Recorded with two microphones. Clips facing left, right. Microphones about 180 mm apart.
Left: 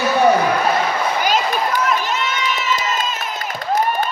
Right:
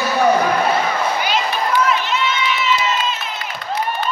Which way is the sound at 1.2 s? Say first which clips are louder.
Left 2 dB; 45° left (ahead or behind).